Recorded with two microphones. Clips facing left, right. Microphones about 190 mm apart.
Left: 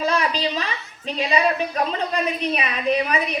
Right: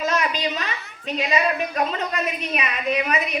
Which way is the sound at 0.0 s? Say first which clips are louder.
Left 1 dB; 30° left (ahead or behind).